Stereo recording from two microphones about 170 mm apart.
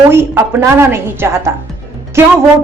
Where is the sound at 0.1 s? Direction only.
15° right (ahead or behind).